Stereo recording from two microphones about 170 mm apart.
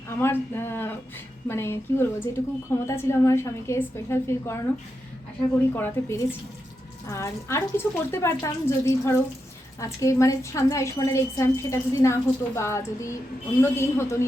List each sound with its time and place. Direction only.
0.1 s a woman's voice: 15° left (ahead or behind)
5.7 s a woman's voice: 15° left (ahead or behind)